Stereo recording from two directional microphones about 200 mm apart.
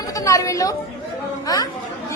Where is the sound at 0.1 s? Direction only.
15° left (ahead or behind).